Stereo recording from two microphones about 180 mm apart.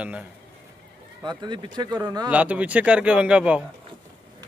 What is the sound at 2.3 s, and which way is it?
A man's voice, 10° right (ahead or behind).